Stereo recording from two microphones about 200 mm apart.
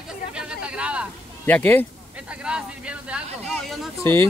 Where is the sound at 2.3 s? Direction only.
5° right (ahead or behind).